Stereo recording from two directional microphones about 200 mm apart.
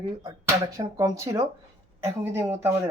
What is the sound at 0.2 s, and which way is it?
Speech, 20° right (ahead or behind).